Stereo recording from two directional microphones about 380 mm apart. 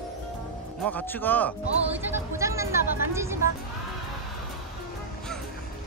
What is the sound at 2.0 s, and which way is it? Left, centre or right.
Speech, centre.